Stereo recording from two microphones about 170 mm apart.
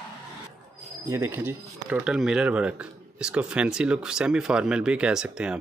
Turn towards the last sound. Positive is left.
turn(degrees=-5)  # may be behind; listen again after turning